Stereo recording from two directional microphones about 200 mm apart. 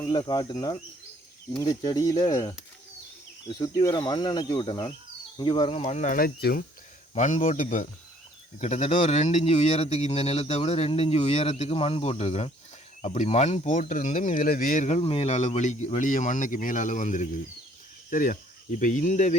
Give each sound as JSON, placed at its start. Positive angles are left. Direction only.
{"t": 0.0, "sound": "speech", "side_deg": 20}
{"t": 3.6, "sound": "speech", "side_deg": 20}
{"t": 7.1, "sound": "speech", "side_deg": 35}